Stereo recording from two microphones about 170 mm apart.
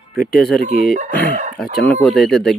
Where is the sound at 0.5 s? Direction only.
60° left (ahead or behind).